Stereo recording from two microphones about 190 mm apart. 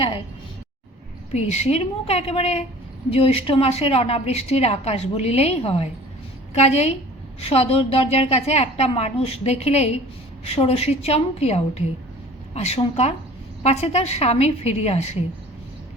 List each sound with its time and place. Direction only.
1.3 s a woman's voice: 35° left (ahead or behind)